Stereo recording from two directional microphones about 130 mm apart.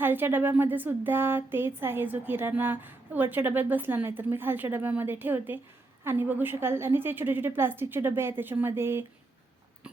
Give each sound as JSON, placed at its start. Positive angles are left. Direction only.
{"t": 0.0, "sound": "speech", "side_deg": -15}